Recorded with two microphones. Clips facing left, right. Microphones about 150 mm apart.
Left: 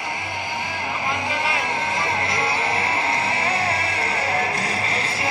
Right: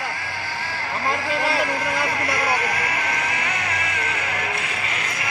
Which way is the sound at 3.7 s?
30° left (ahead or behind).